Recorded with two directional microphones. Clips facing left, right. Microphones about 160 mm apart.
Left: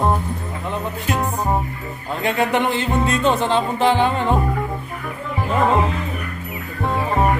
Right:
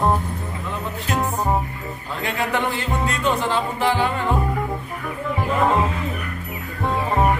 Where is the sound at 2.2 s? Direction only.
20° left (ahead or behind).